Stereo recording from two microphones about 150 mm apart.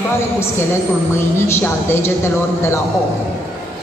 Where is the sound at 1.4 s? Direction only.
15° left (ahead or behind).